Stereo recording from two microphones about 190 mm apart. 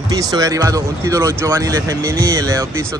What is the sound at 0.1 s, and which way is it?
Speech, 20° right (ahead or behind).